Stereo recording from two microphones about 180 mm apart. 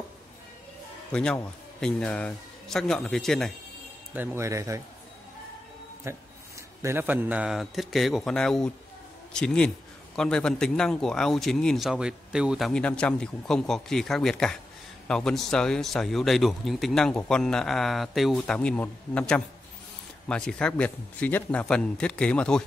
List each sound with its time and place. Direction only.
1.1 s a man's voice: 5° left (ahead or behind)
4.1 s speech: 10° right (ahead or behind)
6.0 s a man's voice: 15° right (ahead or behind); by 22.6 s 5° left (ahead or behind)